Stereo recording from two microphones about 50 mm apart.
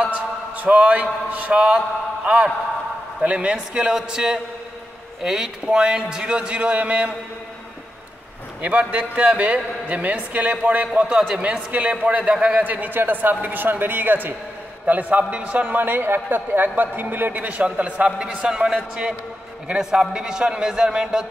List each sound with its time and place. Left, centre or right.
0.1 s a sound: right
1.3 s a man's voice: right
3.2 s a man's voice: right
8.5 s a man's voice: right
11.0 s a man's voice: centre
12.6 s a man's voice: right
17.4 s a man's voice: right